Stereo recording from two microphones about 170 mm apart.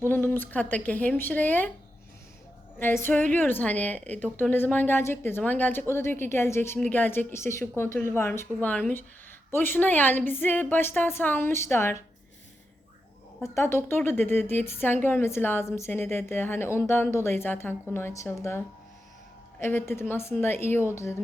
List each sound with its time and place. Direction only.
0.1 s a woman's voice: 10° left (ahead or behind)
2.7 s a woman's voice: 15° left (ahead or behind)
13.4 s a woman's voice: 15° left (ahead or behind)